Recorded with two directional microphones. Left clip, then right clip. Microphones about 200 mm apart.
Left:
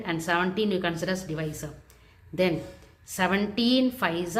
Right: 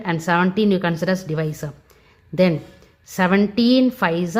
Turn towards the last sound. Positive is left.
turn(degrees=-45)  # may be behind; listen again after turning